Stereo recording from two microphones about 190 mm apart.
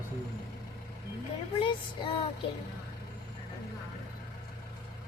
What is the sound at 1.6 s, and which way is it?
Music, 25° left (ahead or behind).